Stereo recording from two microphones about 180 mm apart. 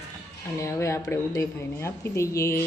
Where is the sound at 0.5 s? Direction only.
15° left (ahead or behind).